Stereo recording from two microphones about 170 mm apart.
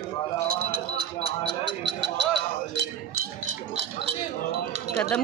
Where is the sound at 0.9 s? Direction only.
85° right.